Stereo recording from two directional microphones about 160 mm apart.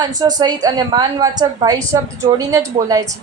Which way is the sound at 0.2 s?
25° right (ahead or behind).